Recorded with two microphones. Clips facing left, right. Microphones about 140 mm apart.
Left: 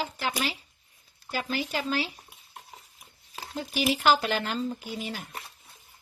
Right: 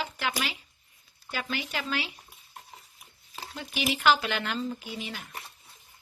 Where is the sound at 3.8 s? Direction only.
40° left (ahead or behind).